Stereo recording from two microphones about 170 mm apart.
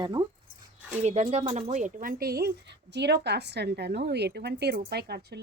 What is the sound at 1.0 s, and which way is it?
Speech, 45° right (ahead or behind).